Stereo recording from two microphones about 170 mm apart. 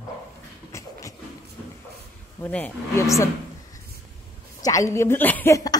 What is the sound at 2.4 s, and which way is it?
Speech, 10° left (ahead or behind).